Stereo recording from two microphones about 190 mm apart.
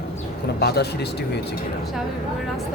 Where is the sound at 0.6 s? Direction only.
60° left (ahead or behind).